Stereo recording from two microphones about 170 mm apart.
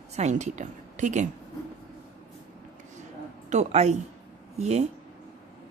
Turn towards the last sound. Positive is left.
turn(degrees=-40)  # may be behind; listen again after turning